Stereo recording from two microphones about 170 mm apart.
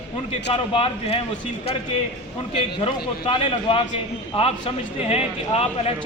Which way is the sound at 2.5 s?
30° left (ahead or behind).